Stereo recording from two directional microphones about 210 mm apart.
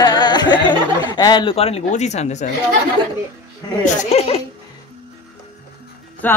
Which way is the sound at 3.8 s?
30° left (ahead or behind).